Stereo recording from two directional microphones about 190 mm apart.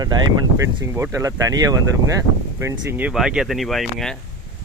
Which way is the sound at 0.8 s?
15° right (ahead or behind).